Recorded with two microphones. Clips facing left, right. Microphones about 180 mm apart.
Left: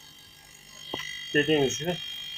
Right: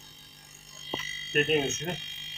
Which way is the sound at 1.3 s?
30° left (ahead or behind).